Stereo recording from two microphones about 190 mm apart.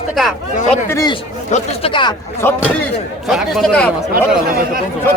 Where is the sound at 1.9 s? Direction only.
25° left (ahead or behind).